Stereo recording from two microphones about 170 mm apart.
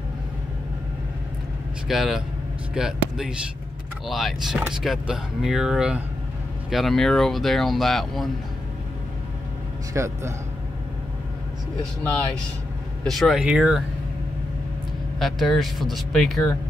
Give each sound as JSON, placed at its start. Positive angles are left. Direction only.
{"t": 1.9, "sound": "speech", "side_deg": 0}
{"t": 9.9, "sound": "speech", "side_deg": -15}
{"t": 12.0, "sound": "speech", "side_deg": 10}
{"t": 15.1, "sound": "speech", "side_deg": 0}